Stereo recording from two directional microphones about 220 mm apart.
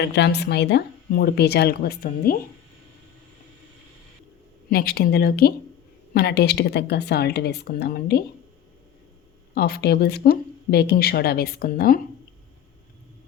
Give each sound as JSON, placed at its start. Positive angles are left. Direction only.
{"t": 0.0, "sound": "a woman's voice", "side_deg": 50}
{"t": 4.7, "sound": "a woman's voice", "side_deg": 45}
{"t": 9.6, "sound": "a woman's voice", "side_deg": 45}